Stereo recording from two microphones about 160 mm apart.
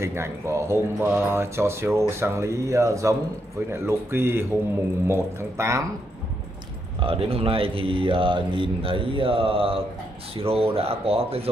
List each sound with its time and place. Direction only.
0.0 s speech: 15° right (ahead or behind)
7.0 s speech: 35° right (ahead or behind)